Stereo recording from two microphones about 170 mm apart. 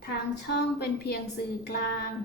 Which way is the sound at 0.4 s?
70° left (ahead or behind).